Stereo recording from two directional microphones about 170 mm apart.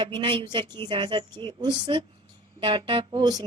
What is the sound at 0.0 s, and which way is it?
A woman's voice, 30° right (ahead or behind).